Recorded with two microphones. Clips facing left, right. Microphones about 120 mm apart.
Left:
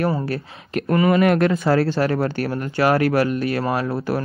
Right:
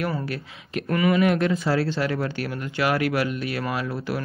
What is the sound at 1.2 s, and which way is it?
Speech, 55° left (ahead or behind).